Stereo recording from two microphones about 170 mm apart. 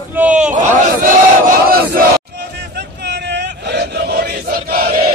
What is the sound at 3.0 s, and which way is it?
Battle cry, 85° right.